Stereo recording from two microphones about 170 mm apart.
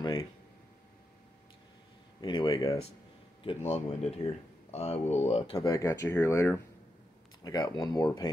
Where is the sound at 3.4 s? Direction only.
35° left (ahead or behind).